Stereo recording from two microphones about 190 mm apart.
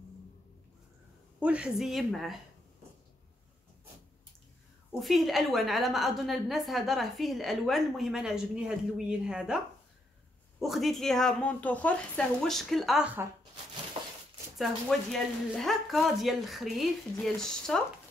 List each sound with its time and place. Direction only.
1.4 s a woman's voice: 5° right (ahead or behind)
4.9 s a woman's voice: centre (ahead or behind)
10.6 s a woman's voice: centre (ahead or behind)
14.0 s a sound: 25° right (ahead or behind)
14.6 s a woman's voice: centre (ahead or behind)